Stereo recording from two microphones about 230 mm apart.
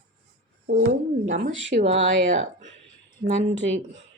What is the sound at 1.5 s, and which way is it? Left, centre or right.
Speech, right.